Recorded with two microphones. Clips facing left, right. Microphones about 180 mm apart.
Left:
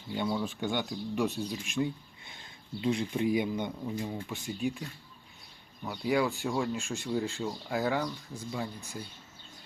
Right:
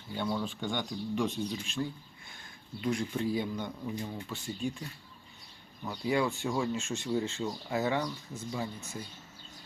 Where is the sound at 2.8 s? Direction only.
20° left (ahead or behind); by 8.1 s centre (ahead or behind).